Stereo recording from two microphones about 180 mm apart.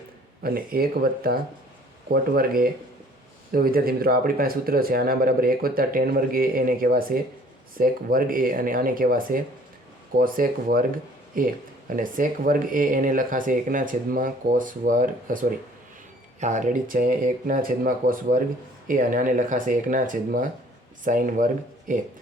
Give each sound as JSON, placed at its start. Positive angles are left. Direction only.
{"t": 0.4, "sound": "speech", "side_deg": -55}